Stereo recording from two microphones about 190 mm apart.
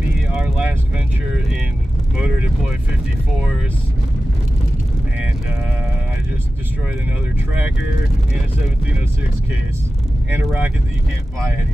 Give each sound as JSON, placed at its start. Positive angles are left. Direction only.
{"t": 0.3, "sound": "vehicle", "side_deg": -5}
{"t": 10.3, "sound": "vehicle", "side_deg": -10}